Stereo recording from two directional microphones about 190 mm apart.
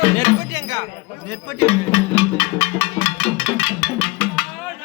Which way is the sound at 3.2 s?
Centre (ahead or behind).